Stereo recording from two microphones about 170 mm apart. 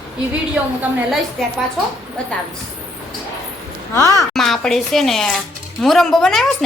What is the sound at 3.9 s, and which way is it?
Speech, 15° left (ahead or behind).